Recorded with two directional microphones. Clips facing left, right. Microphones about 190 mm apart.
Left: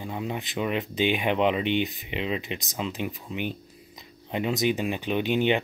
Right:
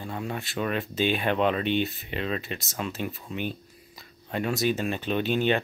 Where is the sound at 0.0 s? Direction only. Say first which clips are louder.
Left 1 dB; 15° left (ahead or behind).